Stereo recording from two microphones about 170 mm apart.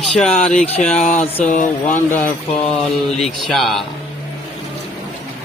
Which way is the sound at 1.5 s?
50° left (ahead or behind).